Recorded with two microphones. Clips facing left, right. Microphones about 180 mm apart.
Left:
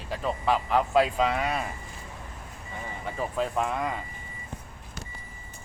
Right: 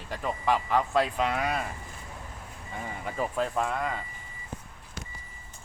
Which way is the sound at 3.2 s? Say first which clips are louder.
Even; centre (ahead or behind).